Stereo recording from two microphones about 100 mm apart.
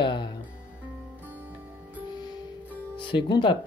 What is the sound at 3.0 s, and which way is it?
Speech, 55° left (ahead or behind).